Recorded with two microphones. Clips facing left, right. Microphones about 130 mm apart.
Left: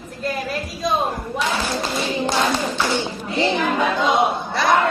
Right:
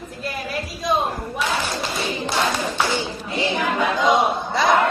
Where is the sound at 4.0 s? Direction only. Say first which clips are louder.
Even; 15° right (ahead or behind).